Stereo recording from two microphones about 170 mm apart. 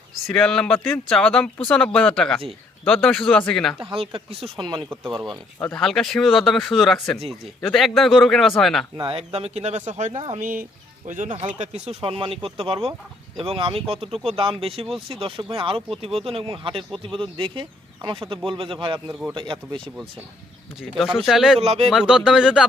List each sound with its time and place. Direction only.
0.3 s speech: 5° left (ahead or behind)
3.8 s speech: 30° right (ahead or behind)
5.5 s speech: 10° left (ahead or behind)
9.0 s speech: 30° right (ahead or behind)
21.0 s speech: centre (ahead or behind)
21.6 s speech: 35° right (ahead or behind)
21.8 s speech: 5° right (ahead or behind)